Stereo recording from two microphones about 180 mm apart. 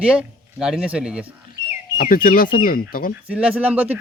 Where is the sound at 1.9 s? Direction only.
50° left (ahead or behind).